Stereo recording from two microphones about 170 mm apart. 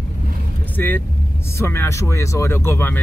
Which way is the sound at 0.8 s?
10° left (ahead or behind).